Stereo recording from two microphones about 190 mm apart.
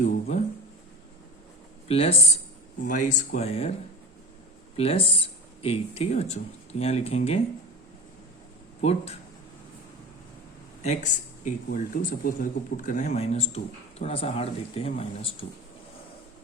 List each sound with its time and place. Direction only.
0.0 s a sound: 40° left (ahead or behind)
1.9 s speech: 30° left (ahead or behind)
2.8 s speech: 40° left (ahead or behind)
4.8 s speech: 30° left (ahead or behind)
8.8 s speech: 35° left (ahead or behind)
10.8 s speech: 40° left (ahead or behind)